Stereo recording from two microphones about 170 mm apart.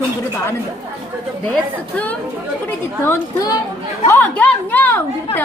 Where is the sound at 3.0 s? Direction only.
15° left (ahead or behind).